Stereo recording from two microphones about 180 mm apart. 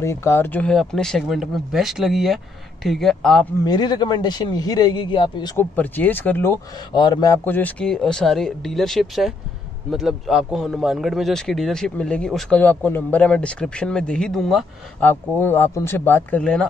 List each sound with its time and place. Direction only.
0.0 s a man's voice: 15° left (ahead or behind)
3.6 s a man's voice: 25° left (ahead or behind)
5.6 s speech: 10° left (ahead or behind)
6.9 s a man's voice: 25° left (ahead or behind); by 14.7 s centre (ahead or behind)
15.0 s speech: 10° left (ahead or behind)